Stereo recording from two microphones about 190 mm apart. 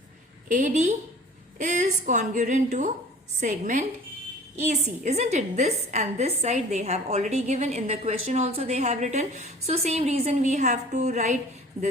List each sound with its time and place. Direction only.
0.4 s a woman's voice: 40° right (ahead or behind)